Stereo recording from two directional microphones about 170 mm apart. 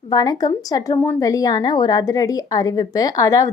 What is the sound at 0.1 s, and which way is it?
A woman's voice, 20° left (ahead or behind).